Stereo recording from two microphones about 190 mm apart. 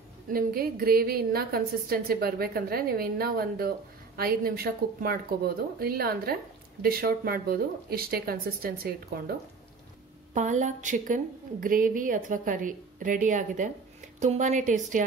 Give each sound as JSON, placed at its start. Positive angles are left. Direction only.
{"t": 0.3, "sound": "a woman's voice", "side_deg": -50}
{"t": 10.3, "sound": "a woman's voice", "side_deg": -40}